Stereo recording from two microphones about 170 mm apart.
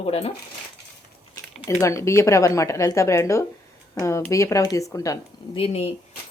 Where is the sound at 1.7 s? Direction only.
15° left (ahead or behind).